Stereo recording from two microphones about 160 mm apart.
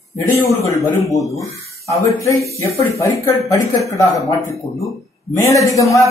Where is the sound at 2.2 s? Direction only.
20° left (ahead or behind).